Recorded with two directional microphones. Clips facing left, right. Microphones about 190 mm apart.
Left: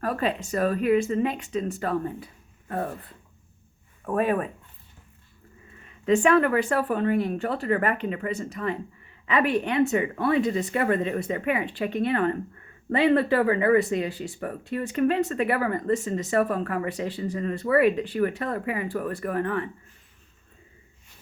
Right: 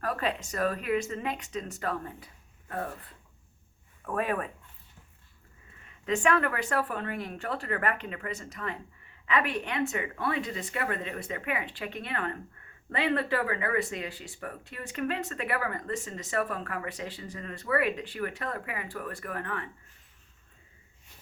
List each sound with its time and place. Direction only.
0.0 s speech: 30° left (ahead or behind)
4.0 s speech: 30° left (ahead or behind)
6.1 s speech: 30° left (ahead or behind)